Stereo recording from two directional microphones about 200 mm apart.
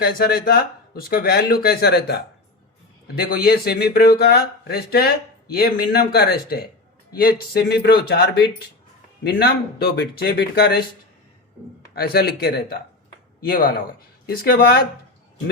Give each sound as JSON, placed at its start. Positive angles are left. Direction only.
{"t": 0.0, "sound": "speech", "side_deg": 50}
{"t": 11.9, "sound": "speech", "side_deg": 50}
{"t": 13.5, "sound": "speech", "side_deg": 45}